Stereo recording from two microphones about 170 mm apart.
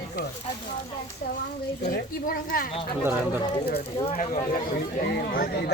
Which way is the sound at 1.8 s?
55° left (ahead or behind).